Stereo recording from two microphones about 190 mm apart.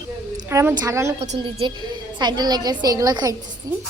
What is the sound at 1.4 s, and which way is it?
A woman's voice, 25° right (ahead or behind).